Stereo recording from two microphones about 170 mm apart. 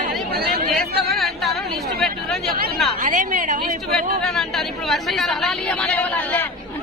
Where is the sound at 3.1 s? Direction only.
45° right (ahead or behind).